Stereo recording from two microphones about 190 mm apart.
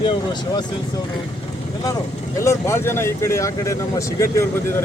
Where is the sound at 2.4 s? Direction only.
15° left (ahead or behind).